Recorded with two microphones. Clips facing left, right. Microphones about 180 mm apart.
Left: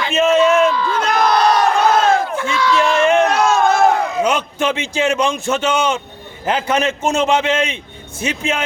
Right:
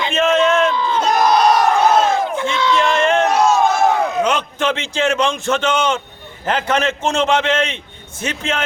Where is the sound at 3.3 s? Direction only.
55° left (ahead or behind).